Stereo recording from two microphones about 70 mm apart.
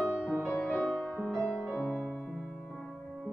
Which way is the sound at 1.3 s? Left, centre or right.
Centre.